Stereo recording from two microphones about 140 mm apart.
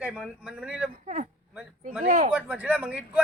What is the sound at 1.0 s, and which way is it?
Speech, 65° right (ahead or behind).